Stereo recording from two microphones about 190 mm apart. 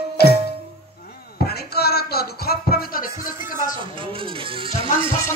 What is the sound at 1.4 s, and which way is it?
Music, 55° left (ahead or behind).